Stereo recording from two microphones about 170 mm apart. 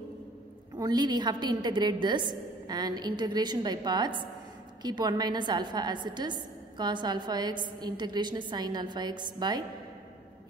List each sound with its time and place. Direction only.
0.7 s a woman's voice: 25° right (ahead or behind)